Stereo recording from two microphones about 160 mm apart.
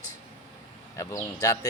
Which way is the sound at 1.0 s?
20° left (ahead or behind).